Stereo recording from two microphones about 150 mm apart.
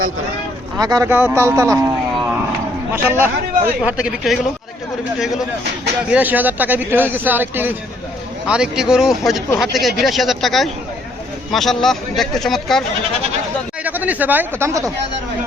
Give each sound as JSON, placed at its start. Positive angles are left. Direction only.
{"t": 0.8, "sound": "speech", "side_deg": -25}
{"t": 1.1, "sound": "speech", "side_deg": -15}
{"t": 2.9, "sound": "speech", "side_deg": -15}
{"t": 6.1, "sound": "speech", "side_deg": -10}
{"t": 13.8, "sound": "speech", "side_deg": -10}